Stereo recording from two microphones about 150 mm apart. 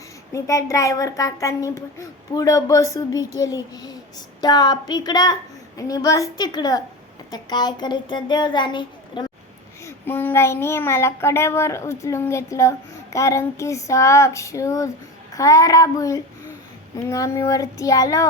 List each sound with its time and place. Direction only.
0.3 s a woman's voice: 20° left (ahead or behind)
9.8 s child singing: 15° left (ahead or behind)
13.1 s a woman's voice: 20° left (ahead or behind)